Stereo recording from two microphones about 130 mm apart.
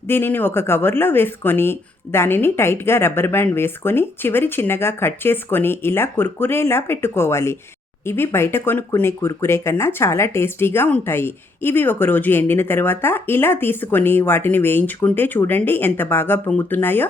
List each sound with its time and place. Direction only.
0.1 s speech: 15° left (ahead or behind)